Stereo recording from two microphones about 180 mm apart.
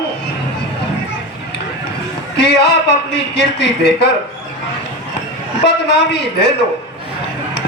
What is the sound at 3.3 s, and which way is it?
Speech, 75° left (ahead or behind).